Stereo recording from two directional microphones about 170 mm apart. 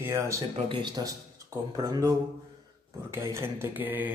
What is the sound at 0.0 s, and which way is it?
Mantra, 15° right (ahead or behind).